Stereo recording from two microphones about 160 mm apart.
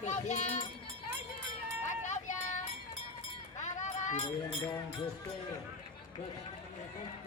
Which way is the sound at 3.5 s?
50° left (ahead or behind).